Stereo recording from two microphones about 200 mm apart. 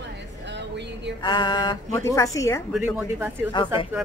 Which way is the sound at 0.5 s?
60° right (ahead or behind).